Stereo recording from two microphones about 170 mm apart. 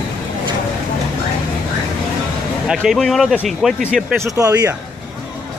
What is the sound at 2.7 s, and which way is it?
Speech, 5° right (ahead or behind).